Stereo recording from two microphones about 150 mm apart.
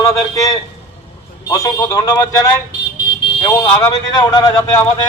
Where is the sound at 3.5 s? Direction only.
20° left (ahead or behind).